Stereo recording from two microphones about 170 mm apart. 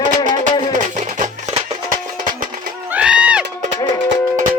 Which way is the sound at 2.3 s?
55° right (ahead or behind).